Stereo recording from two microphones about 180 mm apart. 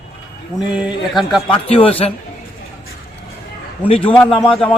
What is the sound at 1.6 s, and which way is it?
Speech, 30° left (ahead or behind).